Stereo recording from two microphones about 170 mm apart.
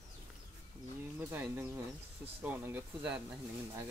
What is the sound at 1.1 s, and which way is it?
Speech, 15° right (ahead or behind).